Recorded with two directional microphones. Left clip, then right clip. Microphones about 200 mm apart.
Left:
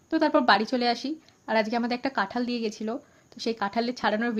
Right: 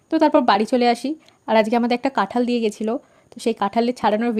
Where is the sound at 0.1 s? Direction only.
35° right (ahead or behind).